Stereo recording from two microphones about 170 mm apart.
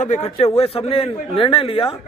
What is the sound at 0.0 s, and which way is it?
A man's voice, 40° left (ahead or behind).